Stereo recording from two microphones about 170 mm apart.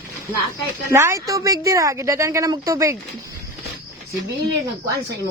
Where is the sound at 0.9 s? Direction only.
15° right (ahead or behind).